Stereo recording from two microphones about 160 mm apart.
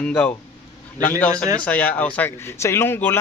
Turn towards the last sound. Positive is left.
turn(degrees=15)  # may be behind; listen again after turning